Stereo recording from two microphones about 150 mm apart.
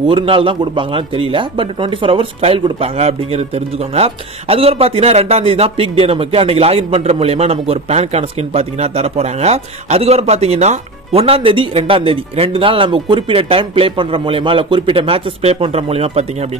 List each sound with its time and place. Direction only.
0.0 s speech: 35° right (ahead or behind)